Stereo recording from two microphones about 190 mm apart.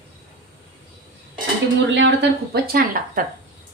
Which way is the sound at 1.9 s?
70° right (ahead or behind).